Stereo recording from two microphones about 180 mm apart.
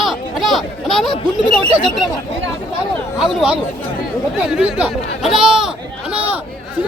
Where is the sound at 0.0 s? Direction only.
Centre (ahead or behind).